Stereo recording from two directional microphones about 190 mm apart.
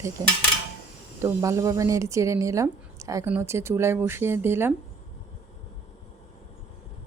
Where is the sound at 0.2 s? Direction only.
20° right (ahead or behind).